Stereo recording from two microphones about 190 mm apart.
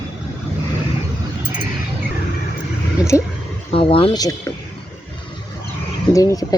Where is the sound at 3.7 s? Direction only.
30° left (ahead or behind).